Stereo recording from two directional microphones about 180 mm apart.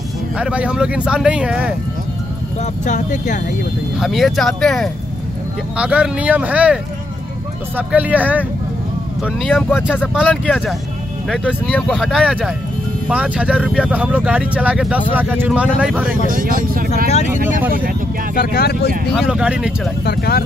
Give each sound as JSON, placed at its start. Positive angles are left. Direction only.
{"t": 0.4, "sound": "speech", "side_deg": -5}
{"t": 2.6, "sound": "speech", "side_deg": 45}
{"t": 4.0, "sound": "speech", "side_deg": 0}
{"t": 9.5, "sound": "speech", "side_deg": 10}
{"t": 16.3, "sound": "speech", "side_deg": -50}
{"t": 18.3, "sound": "speech", "side_deg": 60}
{"t": 19.1, "sound": "speech", "side_deg": -5}
{"t": 20.1, "sound": "speech", "side_deg": 60}